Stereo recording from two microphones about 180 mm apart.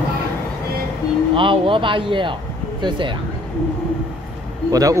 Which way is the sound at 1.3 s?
30° right (ahead or behind).